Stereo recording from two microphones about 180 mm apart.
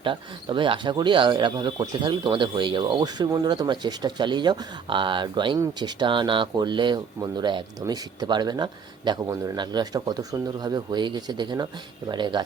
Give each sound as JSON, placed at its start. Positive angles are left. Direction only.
{"t": 0.0, "sound": "speech", "side_deg": -30}